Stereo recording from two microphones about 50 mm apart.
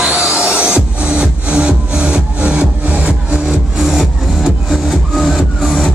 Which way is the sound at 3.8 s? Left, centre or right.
Centre.